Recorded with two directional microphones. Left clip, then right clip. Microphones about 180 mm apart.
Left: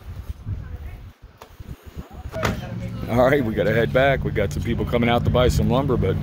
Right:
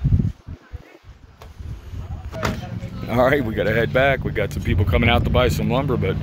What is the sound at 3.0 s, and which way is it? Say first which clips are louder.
Speech: even; 5° left (ahead or behind).